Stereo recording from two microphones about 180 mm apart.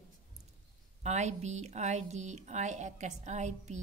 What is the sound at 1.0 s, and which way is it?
A woman's voice, 40° right (ahead or behind).